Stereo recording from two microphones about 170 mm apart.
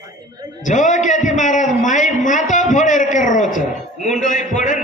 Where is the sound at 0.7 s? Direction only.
45° left (ahead or behind).